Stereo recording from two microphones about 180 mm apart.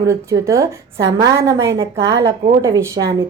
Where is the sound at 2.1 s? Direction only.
80° right.